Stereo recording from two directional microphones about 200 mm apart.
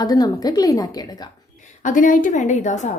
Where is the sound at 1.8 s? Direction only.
40° left (ahead or behind).